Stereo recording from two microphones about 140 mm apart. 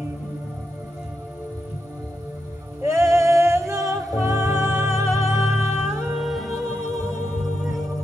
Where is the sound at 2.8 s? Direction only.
20° right (ahead or behind).